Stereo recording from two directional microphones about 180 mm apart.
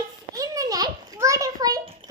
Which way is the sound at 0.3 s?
20° right (ahead or behind).